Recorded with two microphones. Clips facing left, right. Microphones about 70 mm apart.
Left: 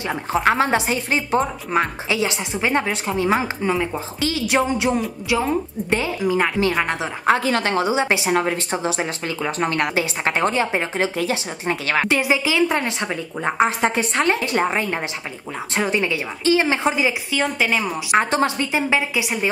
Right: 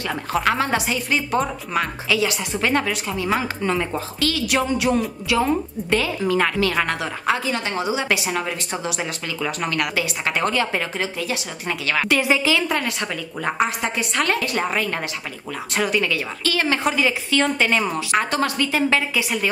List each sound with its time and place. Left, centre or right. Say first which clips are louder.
0.0 s a woman's voice: left 2 dB; left
3.6 s speech: left 1 dB; centre
4.2 s a woman's voice: left 2 dB; left
7.2 s a woman's voice: left 5 dB; left
7.8 s a woman's voice: left 3 dB; left
12.4 s a woman's voice: left 2 dB; left
13.7 s a woman's voice: left 3 dB; left; by 18.0 s centre
18.1 s a woman's voice: left 4 dB; left